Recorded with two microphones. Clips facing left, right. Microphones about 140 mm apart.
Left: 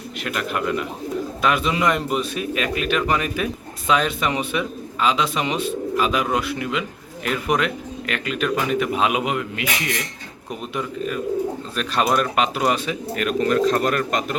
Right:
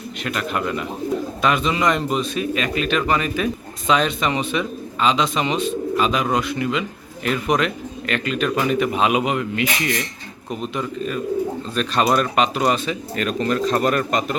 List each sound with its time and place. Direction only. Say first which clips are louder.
0.3 s a man's voice: even; 5° left (ahead or behind)
11.8 s a man's voice: right 2 dB; 10° left (ahead or behind)